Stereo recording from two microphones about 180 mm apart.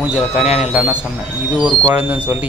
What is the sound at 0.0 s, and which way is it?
Speech, 5° right (ahead or behind).